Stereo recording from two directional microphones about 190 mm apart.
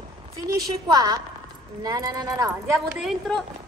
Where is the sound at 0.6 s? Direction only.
20° right (ahead or behind).